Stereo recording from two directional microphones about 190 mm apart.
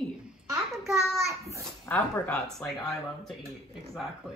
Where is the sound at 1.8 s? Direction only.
10° left (ahead or behind).